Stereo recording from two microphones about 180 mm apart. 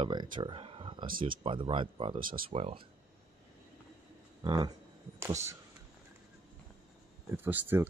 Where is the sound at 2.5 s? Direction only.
35° right (ahead or behind).